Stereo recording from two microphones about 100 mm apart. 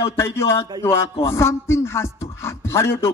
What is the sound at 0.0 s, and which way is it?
Beatboxing, 25° left (ahead or behind).